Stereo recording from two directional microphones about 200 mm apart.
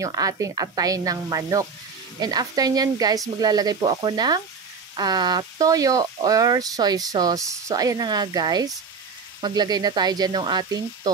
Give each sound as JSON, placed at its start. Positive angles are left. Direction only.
{"t": 0.0, "sound": "speech", "side_deg": -15}